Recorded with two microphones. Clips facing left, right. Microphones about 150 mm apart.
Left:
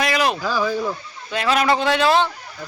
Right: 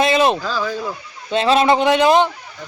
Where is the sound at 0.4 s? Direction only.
10° left (ahead or behind).